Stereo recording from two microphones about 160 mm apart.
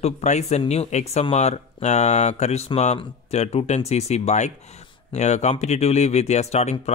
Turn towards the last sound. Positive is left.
turn(degrees=45)  # may be behind; listen again after turning